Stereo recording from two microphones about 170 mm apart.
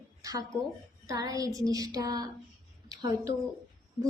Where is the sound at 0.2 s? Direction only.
20° right (ahead or behind).